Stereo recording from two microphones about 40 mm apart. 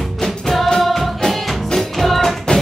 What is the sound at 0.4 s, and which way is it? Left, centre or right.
Music, centre.